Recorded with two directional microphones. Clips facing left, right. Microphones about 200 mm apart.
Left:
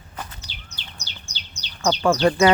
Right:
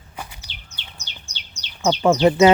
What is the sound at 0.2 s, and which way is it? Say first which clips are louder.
Bird: even; 10° right (ahead or behind).